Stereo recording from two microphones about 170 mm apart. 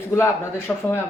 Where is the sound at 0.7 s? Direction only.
10° left (ahead or behind).